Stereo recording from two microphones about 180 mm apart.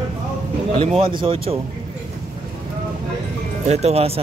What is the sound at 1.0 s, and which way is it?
Speech, 30° right (ahead or behind).